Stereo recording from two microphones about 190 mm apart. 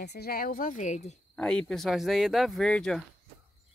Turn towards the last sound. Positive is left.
turn(degrees=5)  # may be behind; listen again after turning